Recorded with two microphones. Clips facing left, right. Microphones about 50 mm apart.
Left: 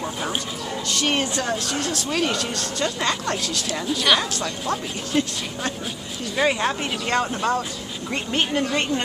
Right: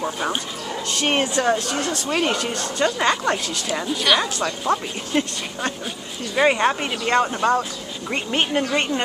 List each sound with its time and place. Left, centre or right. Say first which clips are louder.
0.8 s a woman's voice: right 2 dB; right
1.2 s speech: right 5 dB; centre